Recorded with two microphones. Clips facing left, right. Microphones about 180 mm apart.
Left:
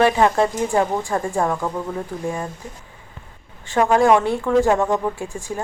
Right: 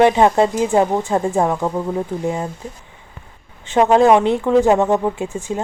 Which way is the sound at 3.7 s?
20° right (ahead or behind).